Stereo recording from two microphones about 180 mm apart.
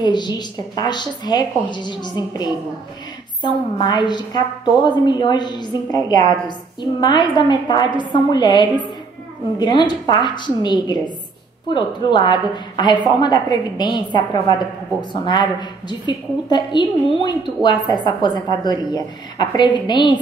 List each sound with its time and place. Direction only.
0.0 s a woman's voice: 25° left (ahead or behind)